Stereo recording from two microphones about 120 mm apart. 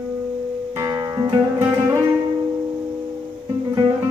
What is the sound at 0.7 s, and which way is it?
Music, 30° right (ahead or behind).